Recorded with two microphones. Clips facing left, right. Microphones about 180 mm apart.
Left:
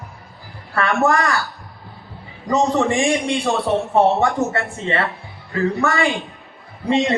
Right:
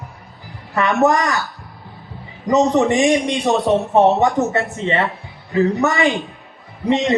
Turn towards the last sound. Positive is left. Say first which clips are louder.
# right 1 dB
turn(degrees=-20)  # may be behind; listen again after turning